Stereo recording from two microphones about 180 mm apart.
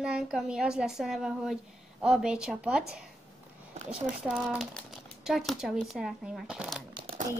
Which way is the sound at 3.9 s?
5° right (ahead or behind).